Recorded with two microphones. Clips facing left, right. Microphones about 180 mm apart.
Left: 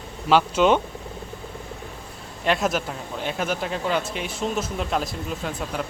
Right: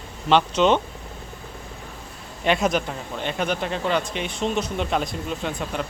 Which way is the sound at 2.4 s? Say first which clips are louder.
Right 2 dB; centre (ahead or behind).